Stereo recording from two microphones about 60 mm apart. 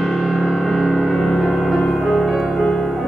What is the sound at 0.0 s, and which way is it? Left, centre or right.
Music, centre.